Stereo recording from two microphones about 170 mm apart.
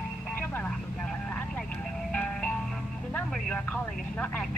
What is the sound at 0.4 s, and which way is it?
Vehicle, 10° left (ahead or behind).